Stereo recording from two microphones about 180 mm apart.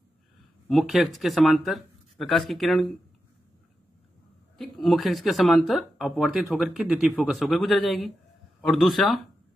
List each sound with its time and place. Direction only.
0.7 s speech: centre (ahead or behind)
4.6 s speech: centre (ahead or behind)